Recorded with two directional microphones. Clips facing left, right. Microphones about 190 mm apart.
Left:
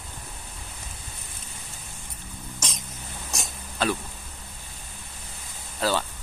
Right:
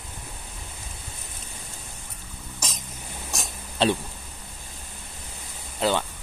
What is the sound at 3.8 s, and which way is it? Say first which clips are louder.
Speech: right 4 dB; 30° right (ahead or behind).